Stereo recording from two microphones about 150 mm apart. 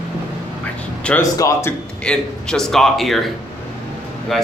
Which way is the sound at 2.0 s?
5° left (ahead or behind).